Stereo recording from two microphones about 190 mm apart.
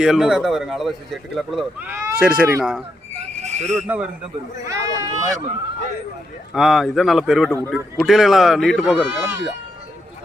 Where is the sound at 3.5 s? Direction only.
35° right (ahead or behind).